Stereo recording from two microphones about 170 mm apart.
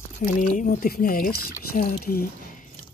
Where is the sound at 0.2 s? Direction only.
50° left (ahead or behind).